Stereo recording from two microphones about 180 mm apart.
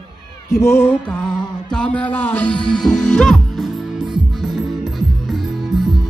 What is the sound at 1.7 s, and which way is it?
Music, 5° left (ahead or behind).